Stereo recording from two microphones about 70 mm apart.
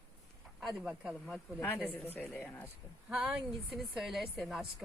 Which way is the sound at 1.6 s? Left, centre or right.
Left.